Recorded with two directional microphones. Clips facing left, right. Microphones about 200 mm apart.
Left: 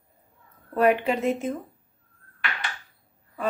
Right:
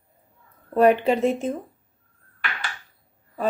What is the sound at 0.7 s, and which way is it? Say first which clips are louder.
Speech: right 4 dB; 30° right (ahead or behind).